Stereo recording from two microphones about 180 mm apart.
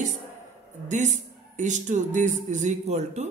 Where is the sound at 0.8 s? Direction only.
40° right (ahead or behind).